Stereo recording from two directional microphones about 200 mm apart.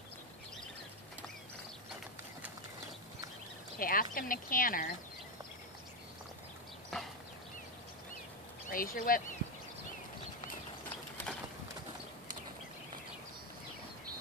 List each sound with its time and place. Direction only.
3.8 s speech: 45° left (ahead or behind)
6.9 s a sound: centre (ahead or behind)
8.6 s speech: 45° left (ahead or behind)